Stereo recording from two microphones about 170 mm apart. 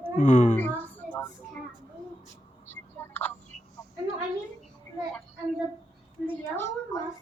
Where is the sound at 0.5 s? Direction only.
10° left (ahead or behind).